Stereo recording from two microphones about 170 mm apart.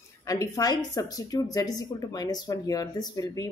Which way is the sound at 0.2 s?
20° left (ahead or behind).